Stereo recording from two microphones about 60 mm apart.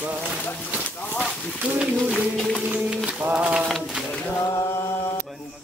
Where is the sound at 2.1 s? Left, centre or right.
Centre.